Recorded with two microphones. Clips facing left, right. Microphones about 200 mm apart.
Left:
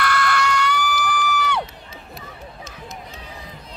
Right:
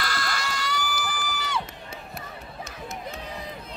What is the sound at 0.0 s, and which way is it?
Crowd, 65° left (ahead or behind).